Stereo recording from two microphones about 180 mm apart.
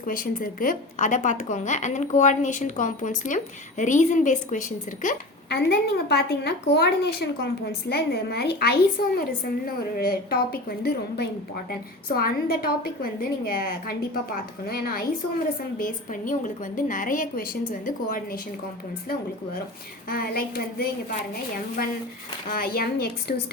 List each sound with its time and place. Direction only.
0.0 s a woman's voice: 50° left (ahead or behind)
5.5 s a woman's voice: 65° left (ahead or behind)
20.1 s a woman's voice: 55° left (ahead or behind)